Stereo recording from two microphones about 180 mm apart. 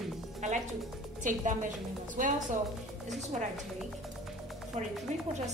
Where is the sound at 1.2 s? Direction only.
45° right (ahead or behind).